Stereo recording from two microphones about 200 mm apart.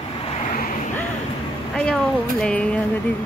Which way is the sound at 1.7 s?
5° left (ahead or behind).